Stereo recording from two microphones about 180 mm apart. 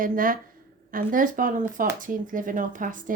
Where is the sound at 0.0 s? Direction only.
50° right (ahead or behind).